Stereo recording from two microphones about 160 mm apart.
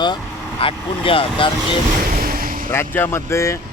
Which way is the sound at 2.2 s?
60° right (ahead or behind).